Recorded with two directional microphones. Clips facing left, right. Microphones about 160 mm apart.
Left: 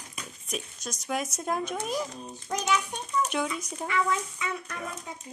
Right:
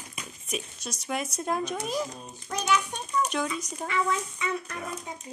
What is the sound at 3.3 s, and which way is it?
Speech, 5° left (ahead or behind).